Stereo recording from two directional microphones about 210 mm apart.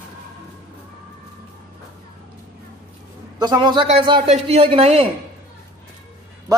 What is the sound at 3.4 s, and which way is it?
A man's voice, 20° right (ahead or behind).